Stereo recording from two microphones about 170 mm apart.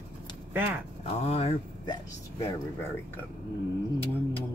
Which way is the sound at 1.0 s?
35° left (ahead or behind).